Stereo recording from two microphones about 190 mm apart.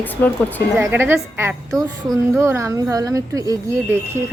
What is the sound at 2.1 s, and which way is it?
A woman's voice, 15° right (ahead or behind).